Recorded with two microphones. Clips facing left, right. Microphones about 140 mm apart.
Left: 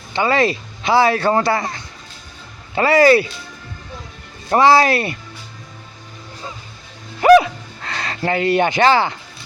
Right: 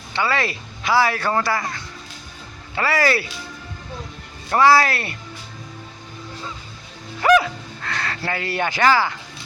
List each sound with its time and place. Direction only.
0.1 s speech: 20° left (ahead or behind)
4.5 s speech: 20° left (ahead or behind)
7.2 s music: 25° left (ahead or behind)
7.9 s speech: 20° left (ahead or behind)